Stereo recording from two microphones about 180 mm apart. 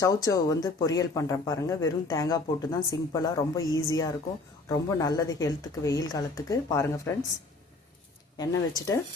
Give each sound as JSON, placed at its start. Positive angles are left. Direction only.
{"t": 0.0, "sound": "speech", "side_deg": 20}
{"t": 8.4, "sound": "speech", "side_deg": 20}